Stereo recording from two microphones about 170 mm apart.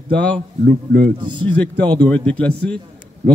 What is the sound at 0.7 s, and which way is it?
Speech, 70° right (ahead or behind).